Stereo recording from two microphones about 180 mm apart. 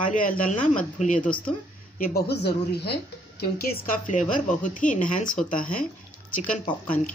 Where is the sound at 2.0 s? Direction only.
60° left (ahead or behind).